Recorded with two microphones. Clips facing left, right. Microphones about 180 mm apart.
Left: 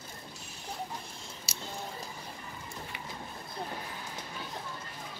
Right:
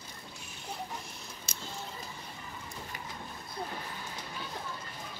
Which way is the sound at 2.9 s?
40° right (ahead or behind).